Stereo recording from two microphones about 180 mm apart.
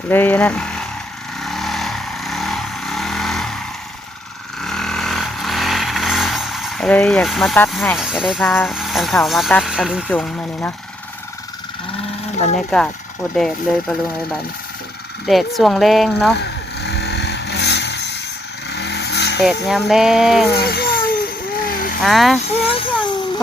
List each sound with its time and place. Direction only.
0.1 s speech: 10° left (ahead or behind)
1.4 s vehicle: centre (ahead or behind)
4.6 s vehicle: 5° left (ahead or behind)
7.7 s speech: centre (ahead or behind)
8.4 s speech: 5° left (ahead or behind)
10.1 s speech: 10° left (ahead or behind)
12.5 s speech: 5° left (ahead or behind)
16.4 s vehicle: 65° left (ahead or behind)
19.4 s speech: centre (ahead or behind)
20.6 s rattle: 60° left (ahead or behind)
21.6 s vehicle: 50° left (ahead or behind)
22.0 s speech: centre (ahead or behind)